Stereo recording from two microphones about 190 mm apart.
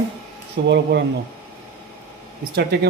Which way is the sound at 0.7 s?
65° right (ahead or behind).